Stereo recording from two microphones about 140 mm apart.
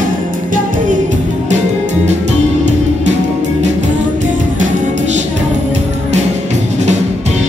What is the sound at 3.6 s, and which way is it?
Music, 60° right (ahead or behind).